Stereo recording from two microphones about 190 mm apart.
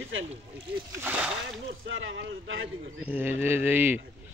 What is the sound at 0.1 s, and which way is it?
Speech, 90° right.